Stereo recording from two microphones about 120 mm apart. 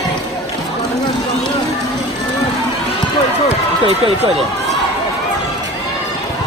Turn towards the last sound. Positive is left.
turn(degrees=-60)  # may be behind; listen again after turning